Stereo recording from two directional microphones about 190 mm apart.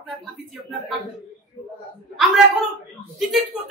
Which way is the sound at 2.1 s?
Centre (ahead or behind).